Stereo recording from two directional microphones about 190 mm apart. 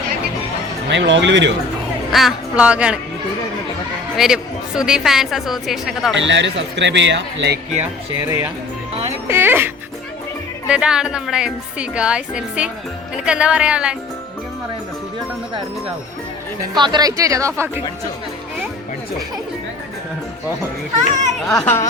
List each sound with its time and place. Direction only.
0.9 s speech: 70° right (ahead or behind)
2.1 s speech: 5° right (ahead or behind)
4.2 s speech: 5° right (ahead or behind)
6.1 s speech: 70° right (ahead or behind)
9.2 s speech: 10° right (ahead or behind)
16.7 s a woman's voice: 25° right (ahead or behind)
21.1 s a child's voice: 40° right (ahead or behind)
21.5 s speech: 15° left (ahead or behind)